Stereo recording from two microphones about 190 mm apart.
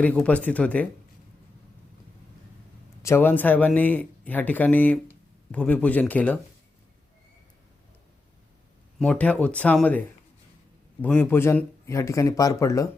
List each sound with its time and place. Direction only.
0.0 s speech: 5° left (ahead or behind)
3.0 s speech: 15° left (ahead or behind)
9.0 s speech: 5° left (ahead or behind)
11.0 s speech: 10° left (ahead or behind)